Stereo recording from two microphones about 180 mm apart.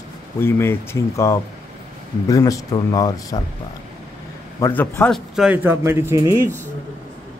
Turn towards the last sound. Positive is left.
turn(degrees=-15)  # may be behind; listen again after turning